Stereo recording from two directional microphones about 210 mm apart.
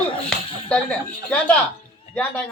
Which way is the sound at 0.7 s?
5° left (ahead or behind).